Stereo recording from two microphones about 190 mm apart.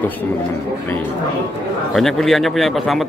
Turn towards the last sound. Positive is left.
turn(degrees=0)  # may be behind; listen again after turning